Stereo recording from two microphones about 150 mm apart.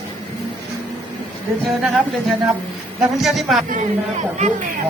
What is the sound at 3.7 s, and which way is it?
Speech, 55° right (ahead or behind).